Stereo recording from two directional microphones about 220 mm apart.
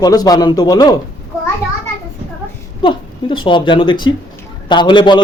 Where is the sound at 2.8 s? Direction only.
20° left (ahead or behind).